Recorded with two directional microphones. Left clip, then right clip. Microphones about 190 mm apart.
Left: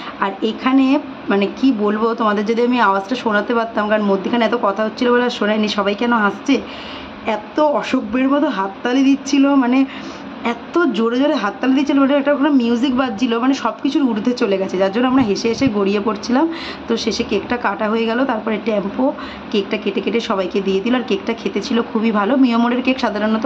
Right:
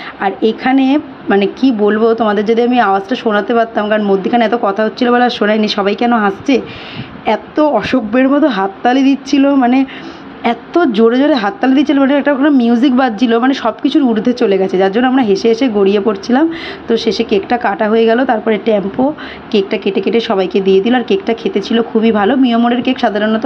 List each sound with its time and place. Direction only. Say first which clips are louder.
0.2 s a woman's voice: right 6 dB; 25° right (ahead or behind)